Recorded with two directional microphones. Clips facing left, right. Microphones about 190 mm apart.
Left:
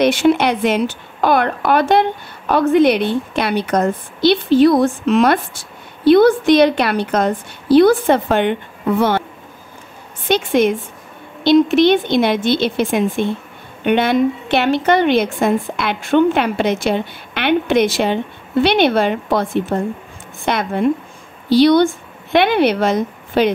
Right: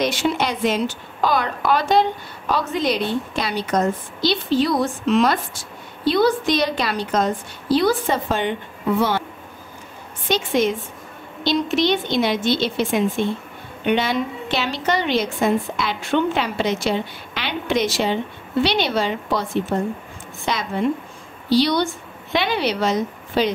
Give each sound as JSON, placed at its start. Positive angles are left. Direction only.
{"t": 0.0, "sound": "a woman's voice", "side_deg": 60}
{"t": 10.2, "sound": "a woman's voice", "side_deg": 60}